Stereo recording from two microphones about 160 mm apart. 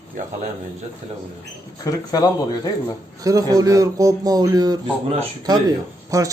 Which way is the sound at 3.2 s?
20° right (ahead or behind).